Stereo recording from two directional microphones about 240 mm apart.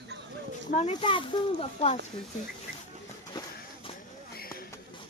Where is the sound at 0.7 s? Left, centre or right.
Left.